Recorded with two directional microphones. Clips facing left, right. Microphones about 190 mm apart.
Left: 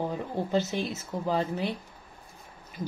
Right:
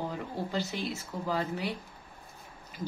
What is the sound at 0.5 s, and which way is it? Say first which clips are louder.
Speech: left 7 dB; 20° left (ahead or behind).